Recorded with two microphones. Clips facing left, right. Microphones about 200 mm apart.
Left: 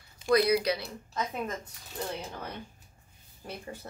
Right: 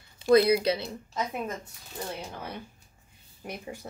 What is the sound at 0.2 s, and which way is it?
A woman's voice, 25° right (ahead or behind).